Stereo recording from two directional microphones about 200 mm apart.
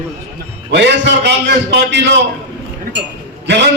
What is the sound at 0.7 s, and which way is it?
A man's voice, 60° right (ahead or behind).